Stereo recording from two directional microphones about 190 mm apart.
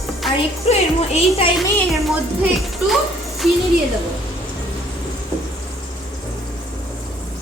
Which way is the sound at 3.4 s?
Centre (ahead or behind).